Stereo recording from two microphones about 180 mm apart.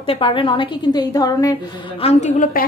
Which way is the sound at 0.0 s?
30° left (ahead or behind).